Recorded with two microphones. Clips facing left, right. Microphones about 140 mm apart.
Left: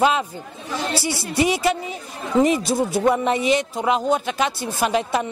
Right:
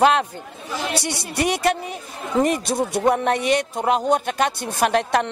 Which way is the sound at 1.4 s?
55° right (ahead or behind).